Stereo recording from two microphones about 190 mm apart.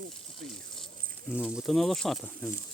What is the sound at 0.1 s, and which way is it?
Snake, centre (ahead or behind).